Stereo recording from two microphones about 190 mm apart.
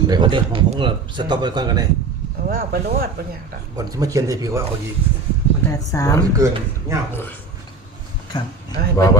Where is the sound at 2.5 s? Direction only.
50° right (ahead or behind).